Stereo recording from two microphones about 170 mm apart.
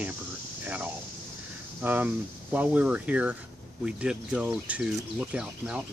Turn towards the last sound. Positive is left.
turn(degrees=-5)  # may be behind; listen again after turning